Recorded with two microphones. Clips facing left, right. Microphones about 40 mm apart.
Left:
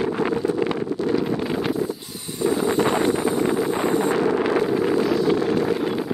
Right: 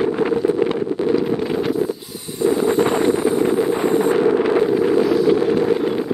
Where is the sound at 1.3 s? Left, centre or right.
Centre.